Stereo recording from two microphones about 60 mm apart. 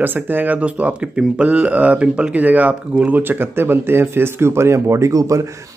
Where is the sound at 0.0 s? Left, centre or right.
Right.